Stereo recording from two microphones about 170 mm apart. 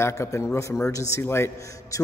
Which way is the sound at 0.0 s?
15° left (ahead or behind).